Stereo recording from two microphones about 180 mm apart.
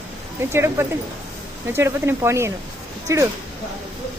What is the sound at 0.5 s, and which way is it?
Speech, 15° right (ahead or behind).